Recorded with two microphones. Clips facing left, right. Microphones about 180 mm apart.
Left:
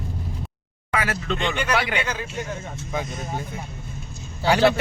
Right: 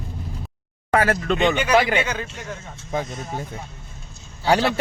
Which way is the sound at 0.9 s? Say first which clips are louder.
Right 6 dB; 50° right (ahead or behind).